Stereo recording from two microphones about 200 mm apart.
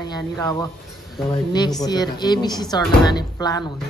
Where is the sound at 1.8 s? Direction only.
20° left (ahead or behind).